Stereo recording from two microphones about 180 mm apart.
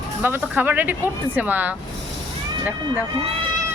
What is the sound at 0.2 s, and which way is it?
Speech, 10° right (ahead or behind).